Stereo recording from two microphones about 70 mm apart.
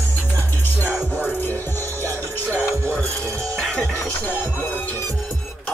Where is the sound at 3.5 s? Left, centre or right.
Centre.